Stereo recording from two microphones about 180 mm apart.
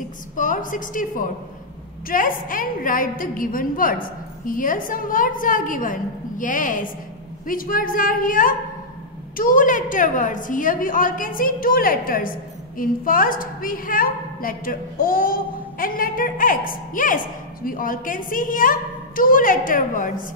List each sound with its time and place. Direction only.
0.4 s a woman's voice: 45° left (ahead or behind)